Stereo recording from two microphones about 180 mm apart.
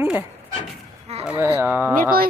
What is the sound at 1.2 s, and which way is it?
Speech, 10° right (ahead or behind).